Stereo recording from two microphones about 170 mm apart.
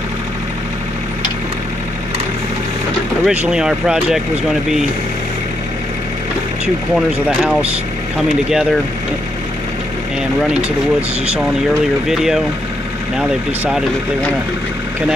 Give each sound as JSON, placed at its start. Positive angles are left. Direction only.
{"t": 3.3, "sound": "speech", "side_deg": -5}
{"t": 7.2, "sound": "speech", "side_deg": -5}
{"t": 12.1, "sound": "speech", "side_deg": 0}